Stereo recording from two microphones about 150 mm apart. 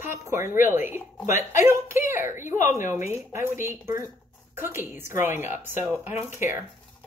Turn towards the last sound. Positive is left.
turn(degrees=-15)  # may be behind; listen again after turning